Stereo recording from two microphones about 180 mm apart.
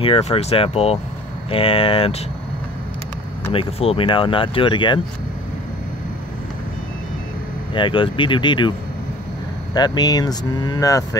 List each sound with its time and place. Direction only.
0.0 s speech: 30° left (ahead or behind)
3.5 s speech: 30° left (ahead or behind)
7.7 s speech: 25° left (ahead or behind)
9.8 s speech: 20° left (ahead or behind)